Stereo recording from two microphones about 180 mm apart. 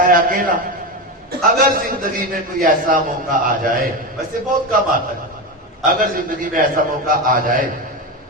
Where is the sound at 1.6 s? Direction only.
55° right (ahead or behind).